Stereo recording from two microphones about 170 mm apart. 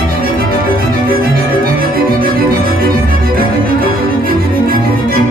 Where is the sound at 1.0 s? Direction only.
60° right (ahead or behind).